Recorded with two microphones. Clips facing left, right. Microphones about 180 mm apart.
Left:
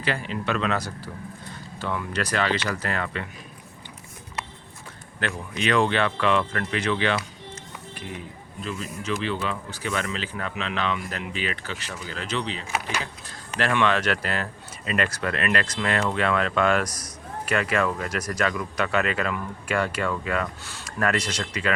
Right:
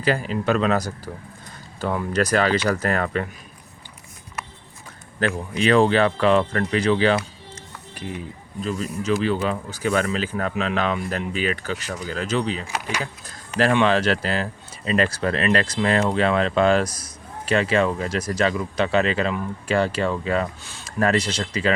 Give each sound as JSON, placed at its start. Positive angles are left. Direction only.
{"t": 0.0, "sound": "speech", "side_deg": -40}
{"t": 5.2, "sound": "speech", "side_deg": -35}
{"t": 8.6, "sound": "speech", "side_deg": -40}